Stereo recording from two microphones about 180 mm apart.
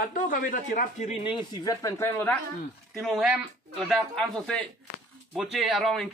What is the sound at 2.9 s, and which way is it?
Speech, centre (ahead or behind).